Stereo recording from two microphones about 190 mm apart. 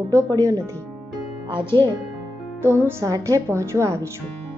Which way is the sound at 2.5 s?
15° right (ahead or behind).